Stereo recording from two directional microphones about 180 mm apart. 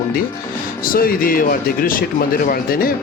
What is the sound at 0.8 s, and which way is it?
Speech, 55° left (ahead or behind).